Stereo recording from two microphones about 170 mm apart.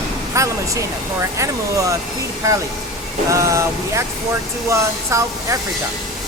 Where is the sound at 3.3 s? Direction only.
15° right (ahead or behind).